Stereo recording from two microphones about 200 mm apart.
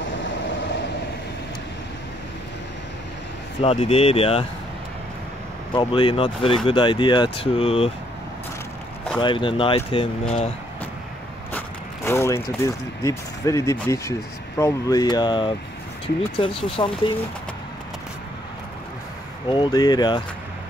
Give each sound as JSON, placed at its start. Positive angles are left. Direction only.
{"t": 3.6, "sound": "speech", "side_deg": 30}
{"t": 5.7, "sound": "speech", "side_deg": 25}
{"t": 9.2, "sound": "speech", "side_deg": 25}
{"t": 11.5, "sound": "speech", "side_deg": 15}
{"t": 19.4, "sound": "speech", "side_deg": 25}